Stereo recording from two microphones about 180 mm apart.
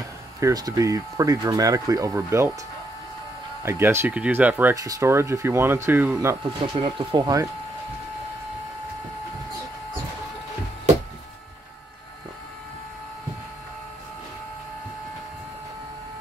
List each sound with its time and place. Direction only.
0.4 s speech: 20° right (ahead or behind)
3.6 s speech: 15° right (ahead or behind)
6.6 s speech: 30° right (ahead or behind)